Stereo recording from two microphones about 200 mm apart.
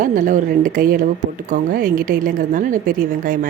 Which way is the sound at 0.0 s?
40° right (ahead or behind).